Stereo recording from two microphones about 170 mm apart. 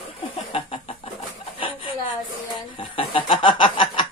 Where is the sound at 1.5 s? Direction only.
30° left (ahead or behind).